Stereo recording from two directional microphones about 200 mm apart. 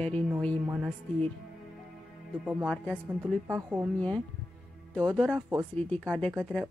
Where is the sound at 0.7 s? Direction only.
10° right (ahead or behind).